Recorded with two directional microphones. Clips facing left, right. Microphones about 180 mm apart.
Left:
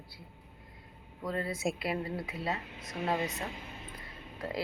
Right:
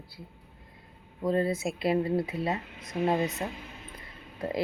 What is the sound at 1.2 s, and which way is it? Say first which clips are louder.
Speech: right 6 dB; 25° right (ahead or behind).